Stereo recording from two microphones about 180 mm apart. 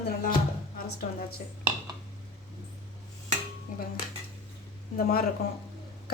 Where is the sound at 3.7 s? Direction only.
45° left (ahead or behind).